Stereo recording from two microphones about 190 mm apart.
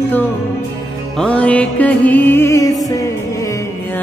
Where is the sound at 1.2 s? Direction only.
5° left (ahead or behind).